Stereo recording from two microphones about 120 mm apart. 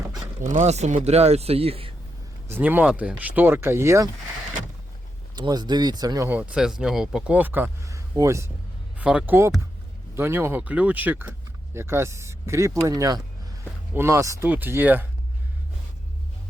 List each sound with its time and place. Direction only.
0.4 s speech: 80° right; by 1.9 s 55° right (ahead or behind)
2.5 s speech: 15° right (ahead or behind)
5.3 s speech: 35° right (ahead or behind)
6.3 s speech: 10° right (ahead or behind)
7.9 s a sound: 25° right (ahead or behind)
9.0 s speech: 10° right (ahead or behind)
14.4 s speech: 15° right (ahead or behind)